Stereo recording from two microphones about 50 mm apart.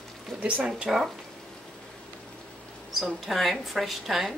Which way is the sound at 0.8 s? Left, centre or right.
Centre.